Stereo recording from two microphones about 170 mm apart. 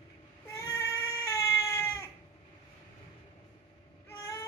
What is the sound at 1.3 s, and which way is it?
Vehicle, 15° left (ahead or behind).